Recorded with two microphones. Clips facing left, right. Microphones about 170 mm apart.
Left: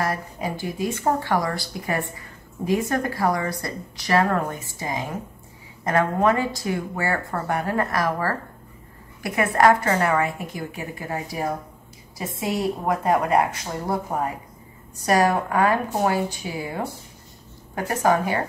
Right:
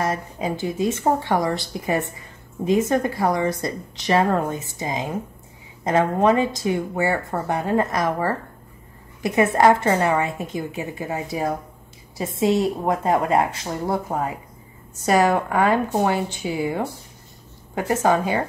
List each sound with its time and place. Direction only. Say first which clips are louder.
0.0 s speech: right 2 dB; 20° right (ahead or behind)
12.4 s speech: right 5 dB; 25° right (ahead or behind)